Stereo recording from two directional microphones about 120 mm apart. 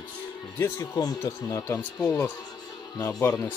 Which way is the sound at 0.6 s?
25° left (ahead or behind).